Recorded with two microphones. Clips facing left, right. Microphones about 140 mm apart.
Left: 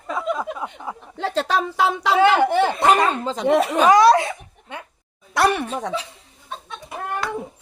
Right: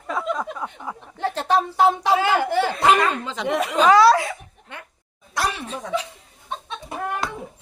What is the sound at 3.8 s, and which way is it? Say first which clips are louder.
Speech: even; 20° left (ahead or behind).